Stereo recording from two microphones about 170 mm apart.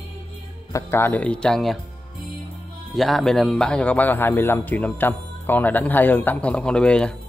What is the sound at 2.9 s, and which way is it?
A man's voice, centre (ahead or behind).